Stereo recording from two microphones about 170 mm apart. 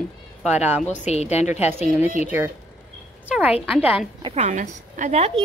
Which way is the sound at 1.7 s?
10° right (ahead or behind).